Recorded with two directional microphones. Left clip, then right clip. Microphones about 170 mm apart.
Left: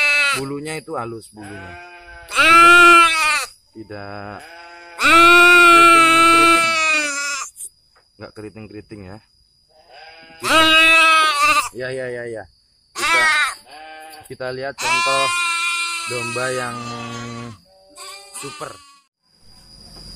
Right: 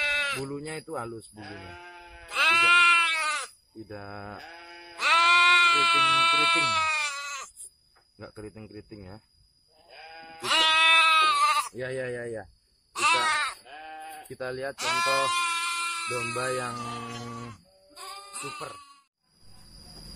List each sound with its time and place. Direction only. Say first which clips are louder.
0.0 s speech: left 11 dB; 20° left (ahead or behind)
2.2 s speech: left 11 dB; 20° left (ahead or behind)
4.6 s sheep: left 7 dB; 25° right (ahead or behind)
4.9 s a sound: left 10 dB; 15° left (ahead or behind)
8.2 s speech: left 8 dB; 15° left (ahead or behind)
10.4 s sheep: left 9 dB; 10° left (ahead or behind)
11.4 s speech: left 8 dB; centre (ahead or behind)
12.9 s crow: left 8 dB; 5° right (ahead or behind)
14.3 s speech: left 8 dB; 5° left (ahead or behind)
14.8 s sheep: left 8 dB; 35° right (ahead or behind)
16.3 s speech: left 7 dB; 10° left (ahead or behind)
17.9 s music: left 4 dB; 50° right (ahead or behind)